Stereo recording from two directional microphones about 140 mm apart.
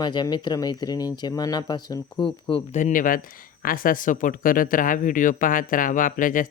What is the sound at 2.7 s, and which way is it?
Speech, 70° left (ahead or behind).